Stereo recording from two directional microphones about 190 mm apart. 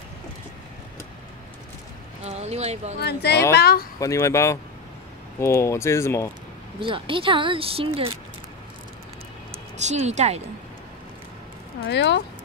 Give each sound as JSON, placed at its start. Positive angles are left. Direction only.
{"t": 2.2, "sound": "speech", "side_deg": -35}
{"t": 3.0, "sound": "speech", "side_deg": 60}
{"t": 4.0, "sound": "speech", "side_deg": 15}
{"t": 6.8, "sound": "speech", "side_deg": -25}
{"t": 9.8, "sound": "speech", "side_deg": -35}
{"t": 11.9, "sound": "speech", "side_deg": 65}